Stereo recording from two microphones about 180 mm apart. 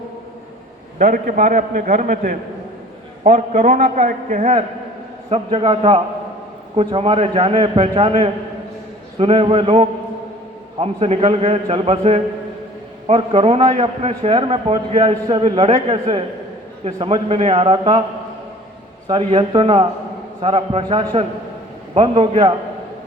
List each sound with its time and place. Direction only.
0.9 s a man's voice: 45° right (ahead or behind)
19.0 s a man's voice: 30° right (ahead or behind)